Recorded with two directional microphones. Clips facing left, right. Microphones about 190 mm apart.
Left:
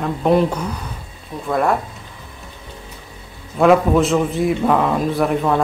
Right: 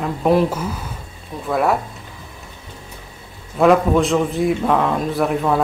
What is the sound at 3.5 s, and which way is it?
A man's voice, centre (ahead or behind).